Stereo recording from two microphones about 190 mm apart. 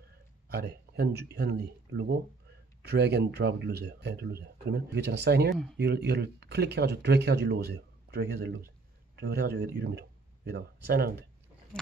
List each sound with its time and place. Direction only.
0.5 s speech: 55° right (ahead or behind)
11.7 s speech: 5° left (ahead or behind)